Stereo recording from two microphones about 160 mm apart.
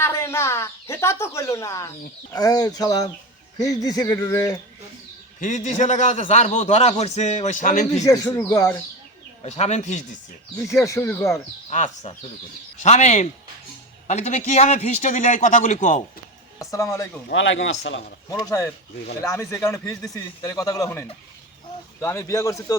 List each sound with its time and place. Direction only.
0.0 s chicken: 15° left (ahead or behind)
2.3 s a man's voice: 20° left (ahead or behind)
5.4 s a man's voice: 50° left (ahead or behind)
8.0 s a man's voice: 20° left (ahead or behind)
9.4 s a man's voice: 45° left (ahead or behind)
10.7 s speech: 20° left (ahead or behind)
11.7 s a man's voice: 45° left (ahead or behind)
16.6 s speech: 20° left (ahead or behind)
17.3 s speech: 90° left
18.3 s a man's voice: 20° left (ahead or behind)